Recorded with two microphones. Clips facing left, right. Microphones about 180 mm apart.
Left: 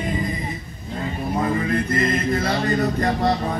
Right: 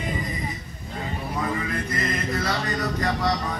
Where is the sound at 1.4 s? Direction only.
45° left (ahead or behind).